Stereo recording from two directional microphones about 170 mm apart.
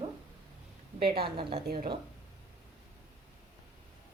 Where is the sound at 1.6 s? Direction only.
65° right (ahead or behind).